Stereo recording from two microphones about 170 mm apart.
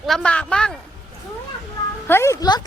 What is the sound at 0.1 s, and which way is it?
Speech, 5° left (ahead or behind).